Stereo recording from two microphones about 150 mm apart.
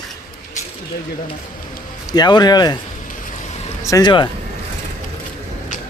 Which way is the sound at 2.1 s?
30° left (ahead or behind).